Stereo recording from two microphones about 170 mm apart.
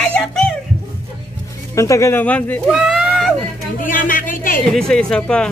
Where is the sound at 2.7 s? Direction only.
5° right (ahead or behind).